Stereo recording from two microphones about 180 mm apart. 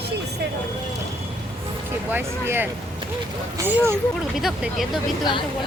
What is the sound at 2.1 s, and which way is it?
Speech, 15° right (ahead or behind).